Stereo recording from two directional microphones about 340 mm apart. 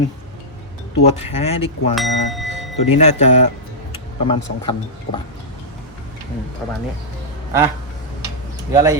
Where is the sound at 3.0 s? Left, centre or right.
Centre.